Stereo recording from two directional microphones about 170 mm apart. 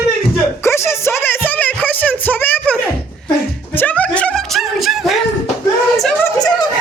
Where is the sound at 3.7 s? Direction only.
10° left (ahead or behind).